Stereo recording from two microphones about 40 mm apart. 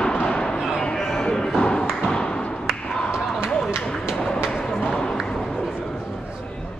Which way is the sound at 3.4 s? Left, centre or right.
Right.